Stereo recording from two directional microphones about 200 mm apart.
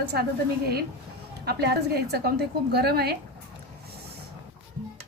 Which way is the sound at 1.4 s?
50° right (ahead or behind).